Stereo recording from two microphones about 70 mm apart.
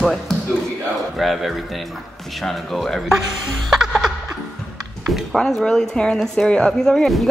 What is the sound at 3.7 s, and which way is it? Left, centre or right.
Music, centre.